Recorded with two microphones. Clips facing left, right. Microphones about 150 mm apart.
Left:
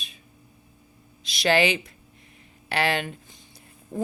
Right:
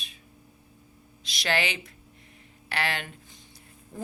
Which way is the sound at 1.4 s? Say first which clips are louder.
Left 7 dB; 15° left (ahead or behind).